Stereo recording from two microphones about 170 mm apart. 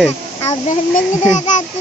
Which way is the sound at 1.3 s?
45° left (ahead or behind).